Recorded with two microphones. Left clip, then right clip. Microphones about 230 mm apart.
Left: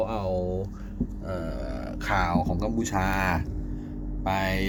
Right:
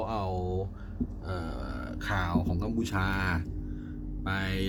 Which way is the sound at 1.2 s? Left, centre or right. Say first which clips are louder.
Left 7 dB; centre.